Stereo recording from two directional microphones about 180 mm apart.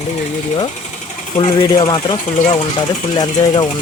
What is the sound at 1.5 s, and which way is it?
Speech, 20° left (ahead or behind).